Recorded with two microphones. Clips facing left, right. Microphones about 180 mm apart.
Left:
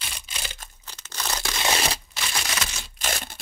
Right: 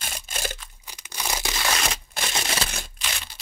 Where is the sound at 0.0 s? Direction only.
45° right (ahead or behind).